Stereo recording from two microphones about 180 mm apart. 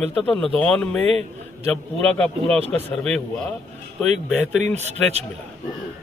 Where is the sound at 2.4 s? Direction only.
35° right (ahead or behind).